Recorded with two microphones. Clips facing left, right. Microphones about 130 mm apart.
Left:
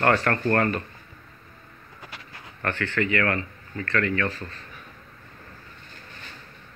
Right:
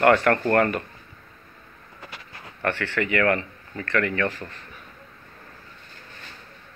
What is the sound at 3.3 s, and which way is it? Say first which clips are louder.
Speech: right 4 dB; 25° right (ahead or behind).